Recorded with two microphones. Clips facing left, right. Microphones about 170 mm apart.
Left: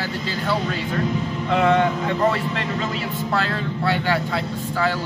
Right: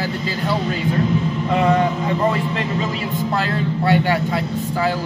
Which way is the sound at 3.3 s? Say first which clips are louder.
Right 1 dB; 15° right (ahead or behind).